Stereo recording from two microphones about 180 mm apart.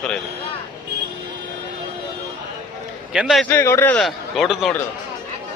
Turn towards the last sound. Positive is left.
turn(degrees=0)  # may be behind; listen again after turning